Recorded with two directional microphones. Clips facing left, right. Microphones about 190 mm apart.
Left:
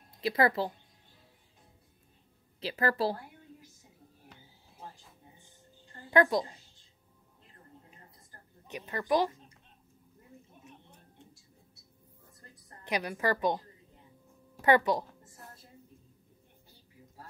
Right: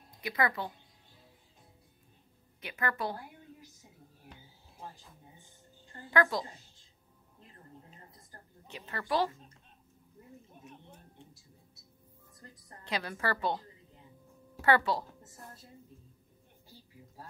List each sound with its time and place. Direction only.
0.2 s speech: 30° left (ahead or behind)
2.6 s speech: 30° left (ahead or behind)
6.0 s speech: 20° left (ahead or behind)
8.6 s a woman's voice: 20° left (ahead or behind)
12.8 s a woman's voice: 15° left (ahead or behind)
14.6 s a woman's voice: 20° left (ahead or behind)